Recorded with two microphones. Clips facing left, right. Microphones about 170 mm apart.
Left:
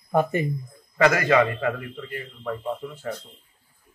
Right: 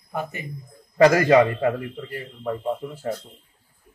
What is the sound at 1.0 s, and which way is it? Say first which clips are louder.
A man's voice: right 4 dB; 35° right (ahead or behind).